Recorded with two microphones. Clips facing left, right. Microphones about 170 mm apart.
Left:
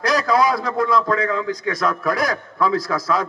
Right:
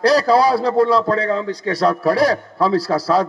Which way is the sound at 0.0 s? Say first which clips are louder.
Right 4 dB; 35° right (ahead or behind).